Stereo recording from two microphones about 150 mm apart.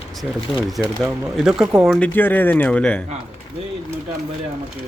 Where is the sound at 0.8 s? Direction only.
5° right (ahead or behind).